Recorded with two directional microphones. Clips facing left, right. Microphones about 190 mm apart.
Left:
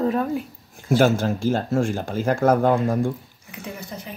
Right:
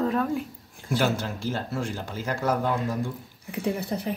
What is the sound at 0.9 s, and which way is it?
Speech, 45° left (ahead or behind).